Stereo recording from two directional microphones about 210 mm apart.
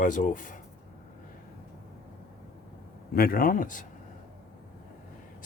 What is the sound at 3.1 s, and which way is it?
Speech, 45° left (ahead or behind).